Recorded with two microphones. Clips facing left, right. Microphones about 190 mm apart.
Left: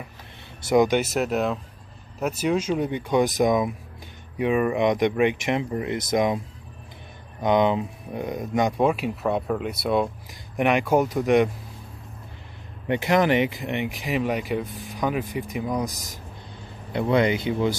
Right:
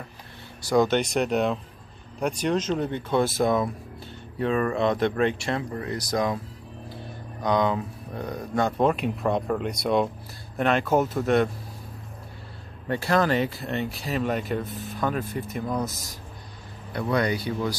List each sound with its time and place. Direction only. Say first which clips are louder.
0.6 s speech: left 2 dB; 20° left (ahead or behind)
0.8 s speech: left 1 dB; 5° left (ahead or behind)
7.4 s speech: left 3 dB; 20° left (ahead or behind)
12.8 s speech: left 2 dB; 15° left (ahead or behind)